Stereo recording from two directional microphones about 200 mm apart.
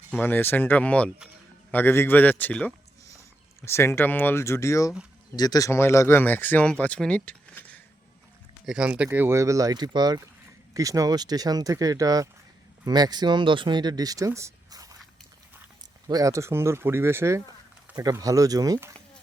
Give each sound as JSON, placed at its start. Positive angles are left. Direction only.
{"t": 0.1, "sound": "speech", "side_deg": 10}
{"t": 8.6, "sound": "speech", "side_deg": -5}
{"t": 16.0, "sound": "speech", "side_deg": -15}